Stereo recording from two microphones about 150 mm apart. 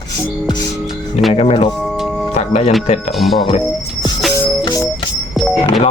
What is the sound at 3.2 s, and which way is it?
Speech, centre (ahead or behind).